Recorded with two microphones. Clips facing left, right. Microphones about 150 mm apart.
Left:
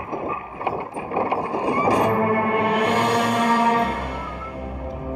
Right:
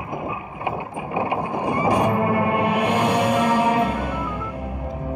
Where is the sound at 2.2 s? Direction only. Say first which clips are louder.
Even; 50° left (ahead or behind).